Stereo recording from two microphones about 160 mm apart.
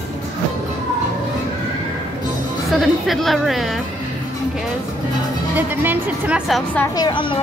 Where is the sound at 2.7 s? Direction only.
Centre (ahead or behind).